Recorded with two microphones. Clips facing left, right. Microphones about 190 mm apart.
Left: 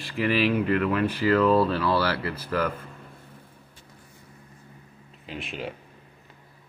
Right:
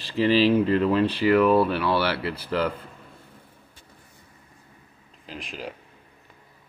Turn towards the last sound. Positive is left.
turn(degrees=0)  # may be behind; listen again after turning